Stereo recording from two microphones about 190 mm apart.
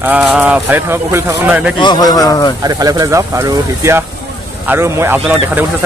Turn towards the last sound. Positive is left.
turn(degrees=-10)  # may be behind; listen again after turning